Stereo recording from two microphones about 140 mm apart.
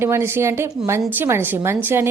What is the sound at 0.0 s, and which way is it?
A woman's voice, 20° right (ahead or behind).